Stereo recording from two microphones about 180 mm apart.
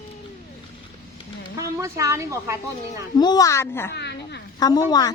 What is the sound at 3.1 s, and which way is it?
Speech, 25° left (ahead or behind).